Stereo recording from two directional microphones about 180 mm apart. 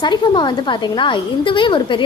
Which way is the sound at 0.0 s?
25° left (ahead or behind).